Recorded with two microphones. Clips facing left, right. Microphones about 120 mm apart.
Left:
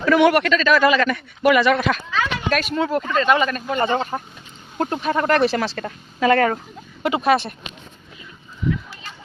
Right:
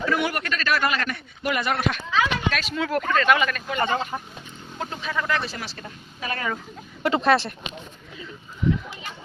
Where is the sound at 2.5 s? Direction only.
55° left (ahead or behind).